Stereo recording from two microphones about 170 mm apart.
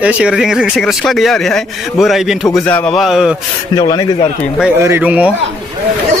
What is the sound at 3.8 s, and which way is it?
Speech, 25° left (ahead or behind).